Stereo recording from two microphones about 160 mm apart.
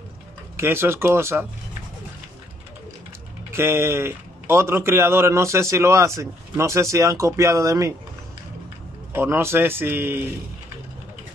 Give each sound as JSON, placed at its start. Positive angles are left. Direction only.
{"t": 0.6, "sound": "a man's voice", "side_deg": -15}
{"t": 3.5, "sound": "a man's voice", "side_deg": -15}
{"t": 9.1, "sound": "a man's voice", "side_deg": -15}